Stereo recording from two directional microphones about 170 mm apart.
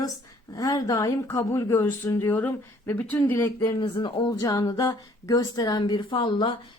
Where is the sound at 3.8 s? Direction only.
30° left (ahead or behind).